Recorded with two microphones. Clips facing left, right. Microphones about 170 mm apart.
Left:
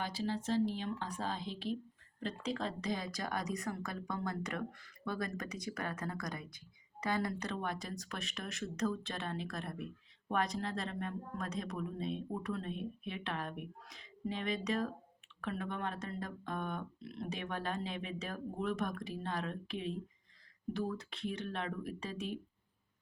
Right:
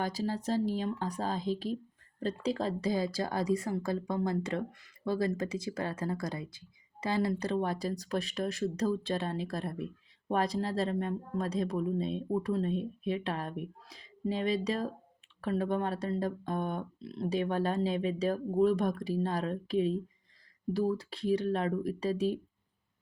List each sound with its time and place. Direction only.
0.0 s a woman's voice: 40° right (ahead or behind)